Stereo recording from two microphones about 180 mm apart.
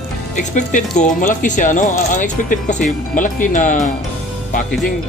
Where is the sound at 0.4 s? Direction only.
45° left (ahead or behind).